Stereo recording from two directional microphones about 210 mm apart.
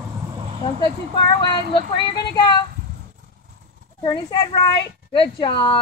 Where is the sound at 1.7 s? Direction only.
20° left (ahead or behind).